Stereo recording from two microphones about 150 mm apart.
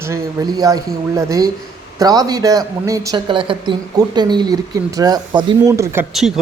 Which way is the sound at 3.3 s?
35° right (ahead or behind).